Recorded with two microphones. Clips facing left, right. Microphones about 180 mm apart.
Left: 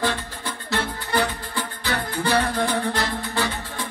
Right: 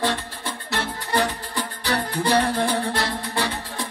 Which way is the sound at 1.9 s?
35° right (ahead or behind).